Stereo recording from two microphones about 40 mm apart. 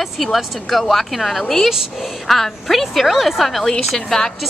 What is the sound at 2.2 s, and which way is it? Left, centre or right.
A woman's voice, centre.